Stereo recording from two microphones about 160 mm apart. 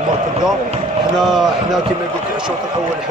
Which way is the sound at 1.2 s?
Centre (ahead or behind).